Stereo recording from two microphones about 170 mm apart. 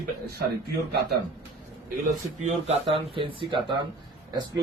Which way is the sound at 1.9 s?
45° right (ahead or behind).